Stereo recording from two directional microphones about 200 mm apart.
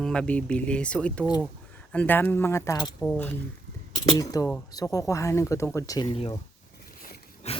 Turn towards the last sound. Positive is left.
turn(degrees=30)  # may be behind; listen again after turning